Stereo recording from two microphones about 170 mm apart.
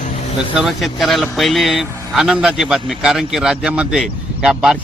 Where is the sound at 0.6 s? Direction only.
Centre (ahead or behind).